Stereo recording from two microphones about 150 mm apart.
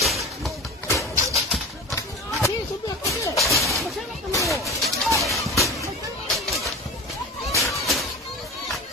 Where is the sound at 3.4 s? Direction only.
Centre (ahead or behind).